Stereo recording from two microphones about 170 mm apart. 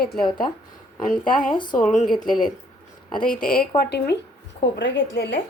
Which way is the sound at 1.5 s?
25° left (ahead or behind).